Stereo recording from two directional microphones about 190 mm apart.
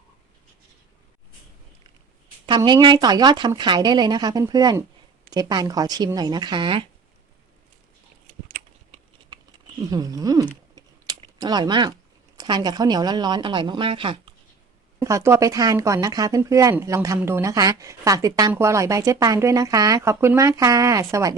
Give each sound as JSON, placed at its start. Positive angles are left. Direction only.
{"t": 2.5, "sound": "speech", "side_deg": -25}
{"t": 8.4, "sound": "a sound", "side_deg": -45}
{"t": 9.9, "sound": "speech", "side_deg": -20}
{"t": 10.8, "sound": "typing", "side_deg": -20}
{"t": 12.4, "sound": "speech", "side_deg": -20}
{"t": 14.9, "sound": "speech", "side_deg": -15}